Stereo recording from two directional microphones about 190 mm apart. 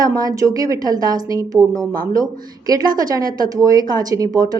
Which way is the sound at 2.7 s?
20° right (ahead or behind).